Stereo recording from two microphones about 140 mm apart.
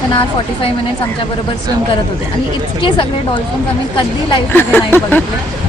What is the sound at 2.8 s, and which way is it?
Speech, 35° left (ahead or behind).